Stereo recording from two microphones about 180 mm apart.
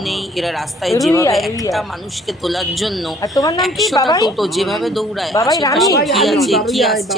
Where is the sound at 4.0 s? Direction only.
20° left (ahead or behind).